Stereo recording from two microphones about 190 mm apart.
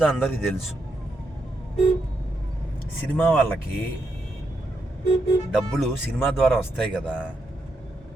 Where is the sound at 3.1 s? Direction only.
10° left (ahead or behind).